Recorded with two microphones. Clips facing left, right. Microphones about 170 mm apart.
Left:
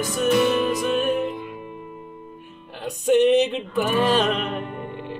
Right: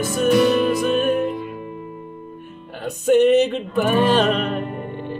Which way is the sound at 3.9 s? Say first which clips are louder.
Right 3 dB; 55° right (ahead or behind).